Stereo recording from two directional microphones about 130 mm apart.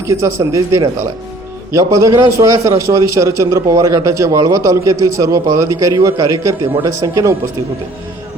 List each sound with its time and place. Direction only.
0.0 s a man's voice: 20° right (ahead or behind)